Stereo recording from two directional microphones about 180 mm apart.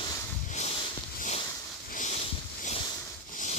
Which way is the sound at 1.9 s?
40° left (ahead or behind).